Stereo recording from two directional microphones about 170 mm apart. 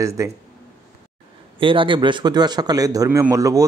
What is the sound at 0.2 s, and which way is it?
Speech, 20° right (ahead or behind).